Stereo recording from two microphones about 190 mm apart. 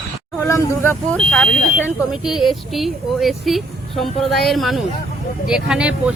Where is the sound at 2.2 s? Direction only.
Centre (ahead or behind).